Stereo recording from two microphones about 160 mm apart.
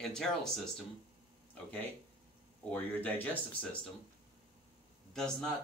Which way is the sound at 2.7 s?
10° left (ahead or behind).